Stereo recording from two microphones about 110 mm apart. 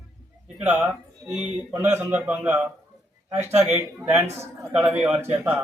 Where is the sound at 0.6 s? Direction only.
10° right (ahead or behind).